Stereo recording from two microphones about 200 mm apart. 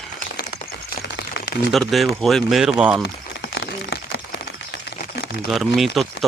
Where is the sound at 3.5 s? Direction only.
55° left (ahead or behind).